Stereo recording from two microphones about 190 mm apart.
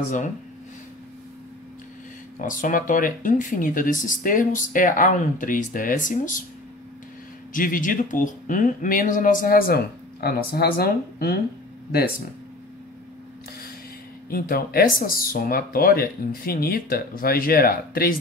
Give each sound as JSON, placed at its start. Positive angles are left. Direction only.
{"t": 2.3, "sound": "speech", "side_deg": 45}
{"t": 7.5, "sound": "speech", "side_deg": 45}
{"t": 14.3, "sound": "speech", "side_deg": 50}